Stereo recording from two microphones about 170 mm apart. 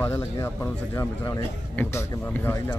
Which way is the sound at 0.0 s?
15° left (ahead or behind).